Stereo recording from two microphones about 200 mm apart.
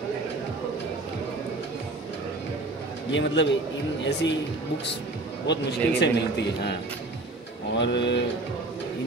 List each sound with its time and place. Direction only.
3.1 s a man's voice: 65° left (ahead or behind)
5.5 s a man's voice: 60° left (ahead or behind)
7.7 s a man's voice: 60° left (ahead or behind)